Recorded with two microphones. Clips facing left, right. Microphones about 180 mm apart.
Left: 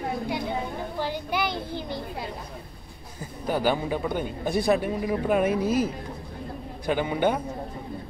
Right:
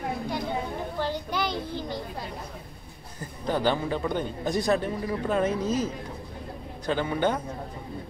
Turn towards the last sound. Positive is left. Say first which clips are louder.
# left 2 dB
turn(degrees=15)  # may be behind; listen again after turning